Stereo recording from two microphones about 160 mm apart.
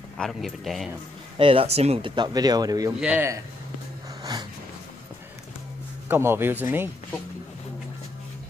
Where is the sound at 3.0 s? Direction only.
15° right (ahead or behind).